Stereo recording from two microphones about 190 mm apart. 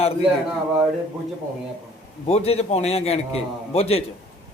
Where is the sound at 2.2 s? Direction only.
35° left (ahead or behind).